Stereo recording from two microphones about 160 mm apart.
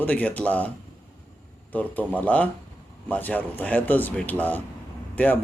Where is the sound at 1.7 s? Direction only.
10° left (ahead or behind).